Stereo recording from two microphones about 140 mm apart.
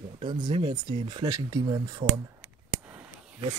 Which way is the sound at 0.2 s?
35° right (ahead or behind).